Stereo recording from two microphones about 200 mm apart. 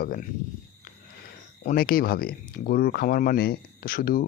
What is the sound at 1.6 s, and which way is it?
Speech, 40° left (ahead or behind).